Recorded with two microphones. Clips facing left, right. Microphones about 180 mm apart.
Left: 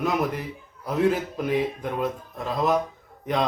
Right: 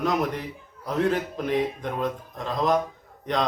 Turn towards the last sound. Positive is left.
turn(degrees=5)  # may be behind; listen again after turning